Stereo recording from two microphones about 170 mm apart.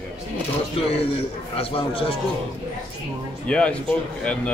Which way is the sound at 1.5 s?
35° left (ahead or behind).